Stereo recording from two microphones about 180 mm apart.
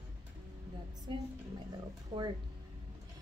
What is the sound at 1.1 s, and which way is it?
A woman's voice, 25° right (ahead or behind).